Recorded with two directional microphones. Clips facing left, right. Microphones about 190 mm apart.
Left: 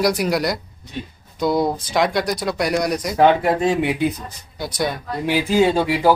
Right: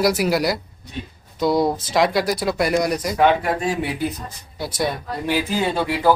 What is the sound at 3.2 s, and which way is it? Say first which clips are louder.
Speech: left 3 dB; 25° left (ahead or behind).